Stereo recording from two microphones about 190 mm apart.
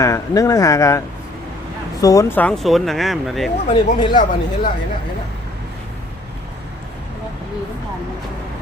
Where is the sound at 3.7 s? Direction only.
25° left (ahead or behind).